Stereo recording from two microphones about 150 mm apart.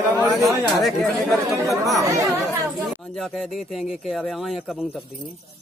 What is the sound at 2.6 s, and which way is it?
Speech, centre (ahead or behind).